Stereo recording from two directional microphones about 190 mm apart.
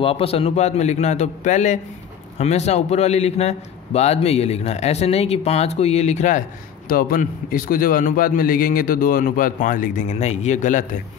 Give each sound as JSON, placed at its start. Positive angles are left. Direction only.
{"t": 0.0, "sound": "a man's voice", "side_deg": 30}